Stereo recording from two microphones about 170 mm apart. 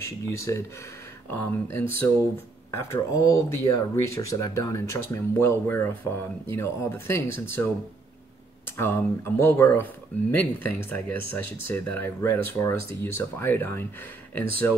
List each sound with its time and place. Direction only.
0.5 s speech: 15° left (ahead or behind)
8.6 s speech: 15° left (ahead or behind)